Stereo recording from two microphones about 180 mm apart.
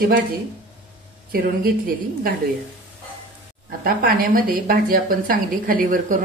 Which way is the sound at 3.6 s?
55° right (ahead or behind).